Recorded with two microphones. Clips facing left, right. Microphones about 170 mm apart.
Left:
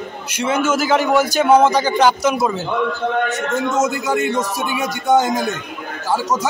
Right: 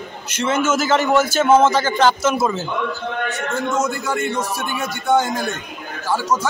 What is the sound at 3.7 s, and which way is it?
A man's voice, 20° left (ahead or behind).